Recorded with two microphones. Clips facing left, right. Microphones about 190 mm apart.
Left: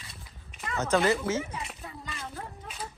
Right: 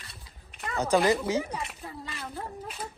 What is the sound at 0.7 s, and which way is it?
Speech, 15° right (ahead or behind).